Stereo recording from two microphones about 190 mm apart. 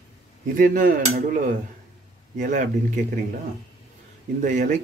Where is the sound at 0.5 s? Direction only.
45° right (ahead or behind).